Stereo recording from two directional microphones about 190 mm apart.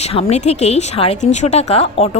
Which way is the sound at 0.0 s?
30° left (ahead or behind).